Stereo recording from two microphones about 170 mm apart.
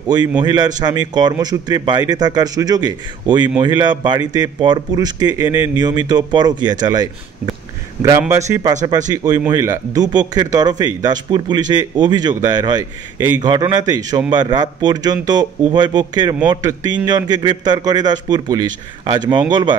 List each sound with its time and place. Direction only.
0.4 s a man's voice: 25° right (ahead or behind)